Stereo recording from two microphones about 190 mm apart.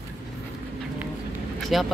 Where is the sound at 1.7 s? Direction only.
Centre (ahead or behind).